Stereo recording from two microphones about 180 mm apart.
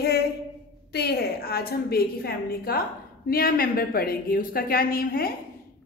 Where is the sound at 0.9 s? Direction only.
60° left (ahead or behind).